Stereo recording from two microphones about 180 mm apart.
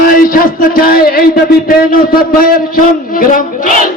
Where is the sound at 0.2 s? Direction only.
50° left (ahead or behind).